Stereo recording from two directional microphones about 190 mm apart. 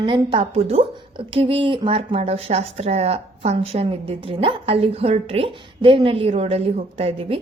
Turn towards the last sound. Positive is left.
turn(degrees=-30)  # may be behind; listen again after turning